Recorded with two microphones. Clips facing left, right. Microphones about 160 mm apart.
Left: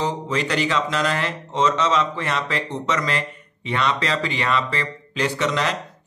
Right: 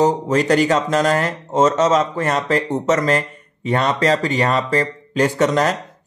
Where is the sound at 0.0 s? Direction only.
45° right (ahead or behind).